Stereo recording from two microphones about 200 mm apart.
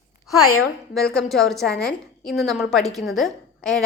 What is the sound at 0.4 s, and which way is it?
Speech, 90° left.